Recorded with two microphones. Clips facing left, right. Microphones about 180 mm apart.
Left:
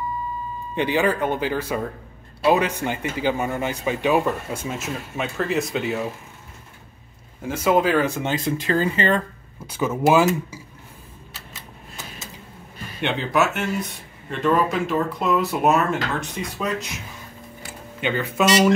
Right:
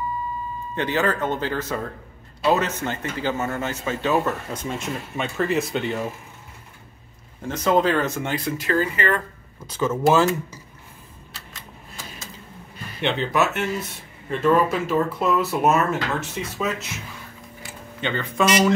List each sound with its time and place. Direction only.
0.7 s speech: 15° left (ahead or behind)
7.4 s speech: 10° left (ahead or behind); by 9.2 s 25° left (ahead or behind)
9.7 s speech: 10° left (ahead or behind)
13.0 s speech: centre (ahead or behind)
18.0 s speech: 5° left (ahead or behind)